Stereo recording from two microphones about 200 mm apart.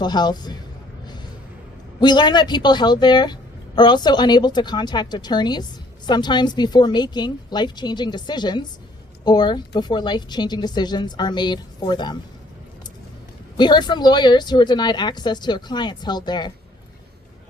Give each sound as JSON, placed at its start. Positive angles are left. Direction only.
{"t": 0.0, "sound": "a woman's voice", "side_deg": 20}
{"t": 1.0, "sound": "a sound", "side_deg": 20}
{"t": 2.0, "sound": "a woman's voice", "side_deg": 20}
{"t": 13.6, "sound": "a woman's voice", "side_deg": 20}